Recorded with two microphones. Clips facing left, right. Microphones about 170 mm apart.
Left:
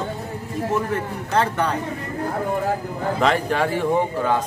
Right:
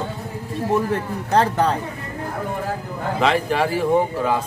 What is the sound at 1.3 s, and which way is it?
Speech, 35° right (ahead or behind).